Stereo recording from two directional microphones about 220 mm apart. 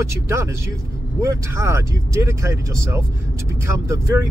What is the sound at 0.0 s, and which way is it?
Speech, 10° right (ahead or behind).